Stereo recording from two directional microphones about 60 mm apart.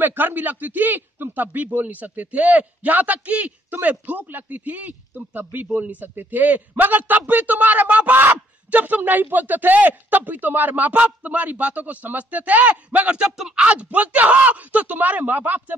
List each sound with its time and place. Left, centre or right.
0.0 s a man's voice: right